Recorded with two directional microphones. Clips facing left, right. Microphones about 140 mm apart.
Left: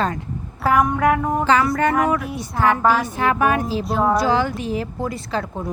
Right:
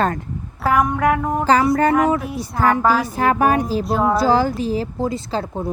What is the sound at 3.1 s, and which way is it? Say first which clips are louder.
Speech: right 2 dB; 40° right (ahead or behind).